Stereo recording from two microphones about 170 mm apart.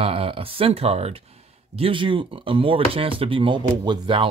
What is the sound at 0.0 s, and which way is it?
Speech, 35° right (ahead or behind).